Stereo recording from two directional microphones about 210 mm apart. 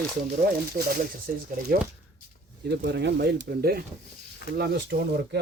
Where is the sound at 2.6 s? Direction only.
55° right (ahead or behind).